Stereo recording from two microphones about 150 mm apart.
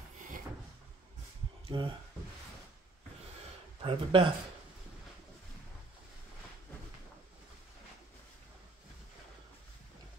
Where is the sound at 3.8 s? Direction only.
35° right (ahead or behind).